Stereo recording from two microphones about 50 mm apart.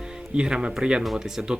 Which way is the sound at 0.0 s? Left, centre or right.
Centre.